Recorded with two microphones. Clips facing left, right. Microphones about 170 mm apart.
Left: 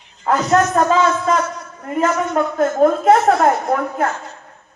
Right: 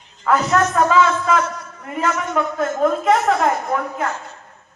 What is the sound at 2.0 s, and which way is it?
A woman's voice, 45° left (ahead or behind).